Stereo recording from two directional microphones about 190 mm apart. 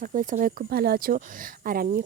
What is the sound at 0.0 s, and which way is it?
Speech, 45° right (ahead or behind).